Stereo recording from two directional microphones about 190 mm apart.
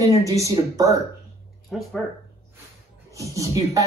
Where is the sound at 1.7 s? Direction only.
Centre (ahead or behind).